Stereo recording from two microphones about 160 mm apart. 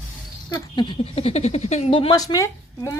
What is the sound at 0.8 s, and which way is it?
Speech, 35° left (ahead or behind).